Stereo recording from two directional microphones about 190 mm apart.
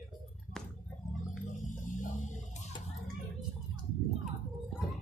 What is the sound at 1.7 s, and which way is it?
Music, 40° left (ahead or behind).